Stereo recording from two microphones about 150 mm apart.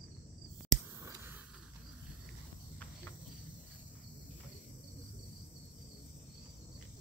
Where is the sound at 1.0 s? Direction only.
15° right (ahead or behind).